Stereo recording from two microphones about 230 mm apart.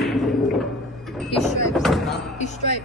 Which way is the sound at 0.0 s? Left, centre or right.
Centre.